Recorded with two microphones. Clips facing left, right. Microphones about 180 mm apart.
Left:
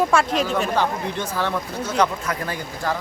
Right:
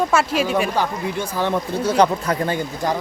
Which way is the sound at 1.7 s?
35° right (ahead or behind).